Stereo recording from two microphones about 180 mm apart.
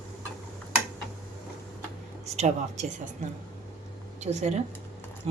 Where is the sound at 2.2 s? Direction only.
40° right (ahead or behind).